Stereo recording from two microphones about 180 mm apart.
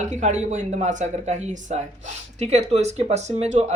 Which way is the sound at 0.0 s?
40° right (ahead or behind).